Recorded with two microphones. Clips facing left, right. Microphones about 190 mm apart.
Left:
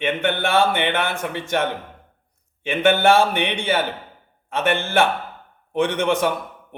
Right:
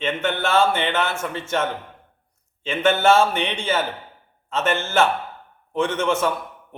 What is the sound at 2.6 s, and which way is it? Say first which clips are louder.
Speech: left 1 dB; 15° left (ahead or behind).